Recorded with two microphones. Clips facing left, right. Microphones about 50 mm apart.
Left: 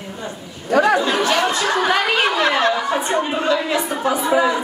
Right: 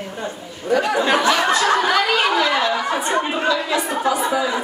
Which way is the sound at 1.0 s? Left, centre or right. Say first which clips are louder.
Right 1 dB; right.